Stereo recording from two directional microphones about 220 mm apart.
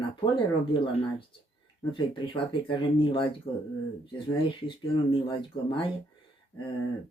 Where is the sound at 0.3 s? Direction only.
25° left (ahead or behind).